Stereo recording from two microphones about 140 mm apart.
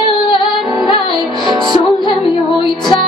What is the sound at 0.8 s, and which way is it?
Music, 35° left (ahead or behind).